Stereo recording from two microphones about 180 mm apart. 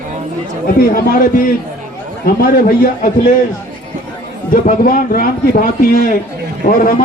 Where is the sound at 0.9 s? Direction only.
55° left (ahead or behind).